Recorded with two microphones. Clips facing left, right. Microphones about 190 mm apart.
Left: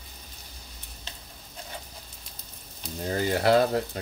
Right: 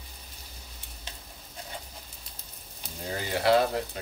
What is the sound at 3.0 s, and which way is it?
Frying, 45° left (ahead or behind).